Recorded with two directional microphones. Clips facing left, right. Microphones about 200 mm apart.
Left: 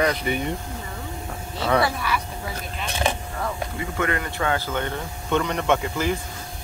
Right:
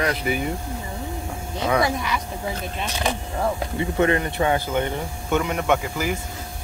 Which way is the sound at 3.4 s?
25° right (ahead or behind).